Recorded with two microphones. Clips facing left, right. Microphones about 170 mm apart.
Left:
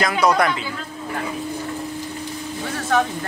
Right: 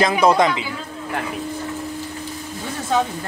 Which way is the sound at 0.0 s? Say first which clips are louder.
Right 3 dB; 25° right (ahead or behind).